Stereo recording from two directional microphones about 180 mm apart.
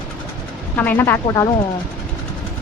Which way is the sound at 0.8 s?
10° left (ahead or behind).